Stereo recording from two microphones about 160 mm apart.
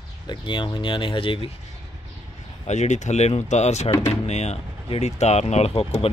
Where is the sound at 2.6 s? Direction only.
45° left (ahead or behind).